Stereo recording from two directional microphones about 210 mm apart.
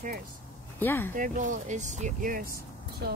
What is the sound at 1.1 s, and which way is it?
Speech, 35° right (ahead or behind).